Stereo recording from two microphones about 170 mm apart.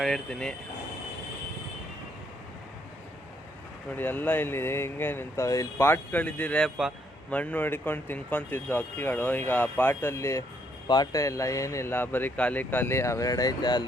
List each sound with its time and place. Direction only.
0.0 s speech: 5° left (ahead or behind)
3.9 s speech: 10° left (ahead or behind)